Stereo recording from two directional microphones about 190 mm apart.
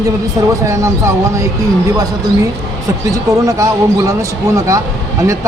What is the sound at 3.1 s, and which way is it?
Speech, 15° right (ahead or behind).